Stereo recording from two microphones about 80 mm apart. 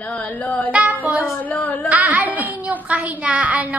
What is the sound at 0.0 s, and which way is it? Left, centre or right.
Speech, centre.